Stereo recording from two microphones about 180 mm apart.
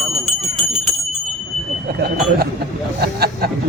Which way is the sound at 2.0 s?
60° right (ahead or behind).